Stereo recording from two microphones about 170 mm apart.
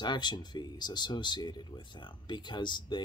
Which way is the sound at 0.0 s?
25° left (ahead or behind).